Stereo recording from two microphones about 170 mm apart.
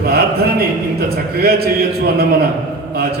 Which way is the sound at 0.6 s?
65° right (ahead or behind).